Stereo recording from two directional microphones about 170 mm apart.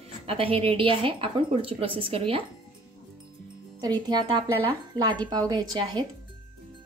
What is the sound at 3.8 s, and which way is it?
Speech, 25° right (ahead or behind).